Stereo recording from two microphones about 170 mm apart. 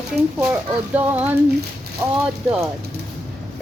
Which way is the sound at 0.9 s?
10° right (ahead or behind).